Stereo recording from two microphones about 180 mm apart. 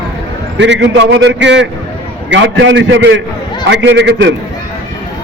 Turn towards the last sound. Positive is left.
turn(degrees=-80)